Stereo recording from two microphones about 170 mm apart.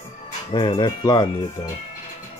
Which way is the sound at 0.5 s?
30° left (ahead or behind).